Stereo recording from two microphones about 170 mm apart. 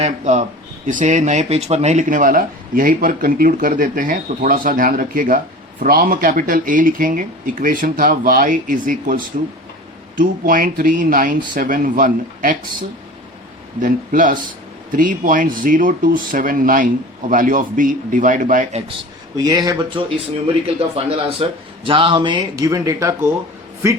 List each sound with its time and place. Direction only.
0.0 s speech: 45° right (ahead or behind)
13.8 s speech: 55° right (ahead or behind)
19.4 s speech: 20° right (ahead or behind)